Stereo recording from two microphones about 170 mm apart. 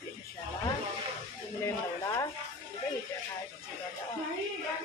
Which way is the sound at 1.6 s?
20° left (ahead or behind).